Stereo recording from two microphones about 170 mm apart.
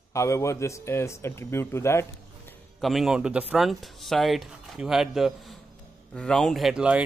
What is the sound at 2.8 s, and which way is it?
Speech, centre (ahead or behind).